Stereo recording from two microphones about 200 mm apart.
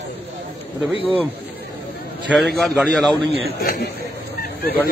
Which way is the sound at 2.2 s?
Centre (ahead or behind).